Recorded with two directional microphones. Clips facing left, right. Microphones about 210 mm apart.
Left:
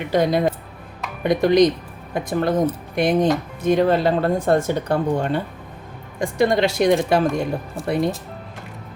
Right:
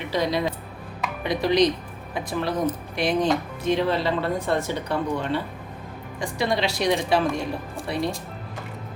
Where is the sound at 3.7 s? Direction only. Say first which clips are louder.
Left 6 dB; 50° left (ahead or behind).